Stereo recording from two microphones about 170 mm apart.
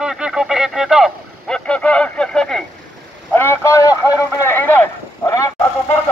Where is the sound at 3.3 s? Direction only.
15° left (ahead or behind).